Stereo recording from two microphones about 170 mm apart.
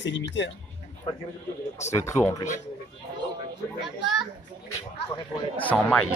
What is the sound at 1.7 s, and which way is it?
Speech, 15° left (ahead or behind).